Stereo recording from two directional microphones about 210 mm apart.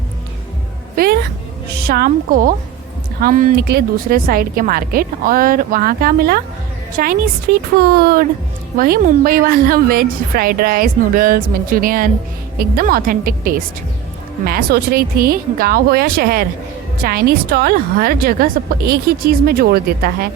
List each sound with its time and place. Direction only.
0.9 s cat: 45° right (ahead or behind)
1.7 s a woman's voice: 45° right (ahead or behind)